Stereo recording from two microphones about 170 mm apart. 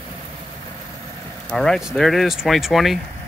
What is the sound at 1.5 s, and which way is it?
Speech, 5° left (ahead or behind).